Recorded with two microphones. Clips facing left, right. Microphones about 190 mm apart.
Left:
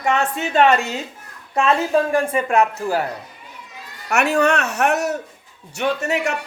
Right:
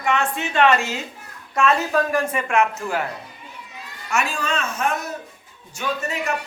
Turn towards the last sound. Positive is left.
turn(degrees=70)  # may be behind; listen again after turning